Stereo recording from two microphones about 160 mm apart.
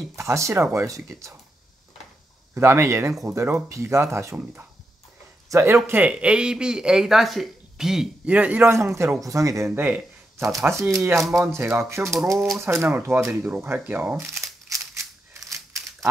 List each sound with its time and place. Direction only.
0.1 s speech: 20° right (ahead or behind)
2.5 s speech: 15° right (ahead or behind)
9.7 s speech: 10° right (ahead or behind)
15.5 s crumpling: 20° right (ahead or behind)